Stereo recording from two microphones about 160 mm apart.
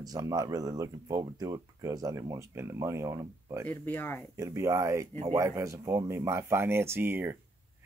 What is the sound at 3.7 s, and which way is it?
Speech, 10° left (ahead or behind).